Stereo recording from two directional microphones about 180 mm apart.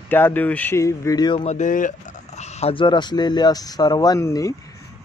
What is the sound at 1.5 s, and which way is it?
Speech, 45° left (ahead or behind).